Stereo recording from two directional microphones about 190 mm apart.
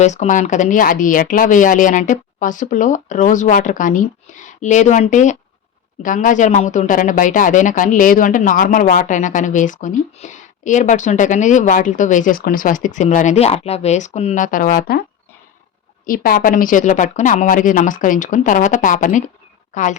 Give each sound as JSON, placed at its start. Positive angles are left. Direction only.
{"t": 0.0, "sound": "speech", "side_deg": 40}
{"t": 16.0, "sound": "speech", "side_deg": 50}